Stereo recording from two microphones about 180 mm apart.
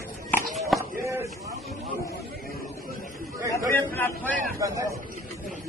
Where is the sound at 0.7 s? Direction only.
15° right (ahead or behind).